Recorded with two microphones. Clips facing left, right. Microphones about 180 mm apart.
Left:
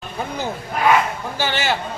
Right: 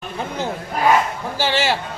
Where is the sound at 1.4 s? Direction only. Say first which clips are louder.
Right 3 dB; 30° right (ahead or behind).